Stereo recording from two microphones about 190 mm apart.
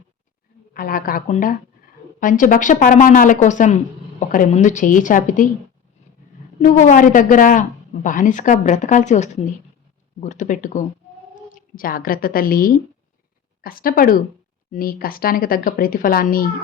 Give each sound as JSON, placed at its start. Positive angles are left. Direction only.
{"t": 0.7, "sound": "speech", "side_deg": 50}
{"t": 6.6, "sound": "a woman's voice", "side_deg": 40}